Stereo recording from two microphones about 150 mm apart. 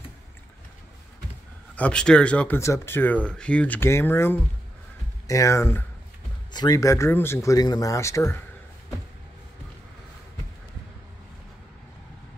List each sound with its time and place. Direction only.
1.8 s speech: 5° left (ahead or behind)